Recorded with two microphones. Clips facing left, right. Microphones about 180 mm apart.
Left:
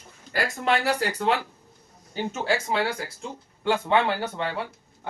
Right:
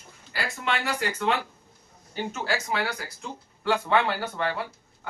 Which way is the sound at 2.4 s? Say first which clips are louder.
Left 4 dB; 25° left (ahead or behind).